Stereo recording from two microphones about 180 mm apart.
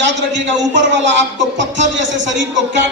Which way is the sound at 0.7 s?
80° right.